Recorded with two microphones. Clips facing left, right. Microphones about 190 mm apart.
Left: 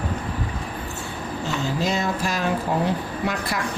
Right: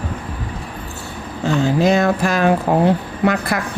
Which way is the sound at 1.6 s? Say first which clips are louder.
Right 10 dB; 60° right (ahead or behind).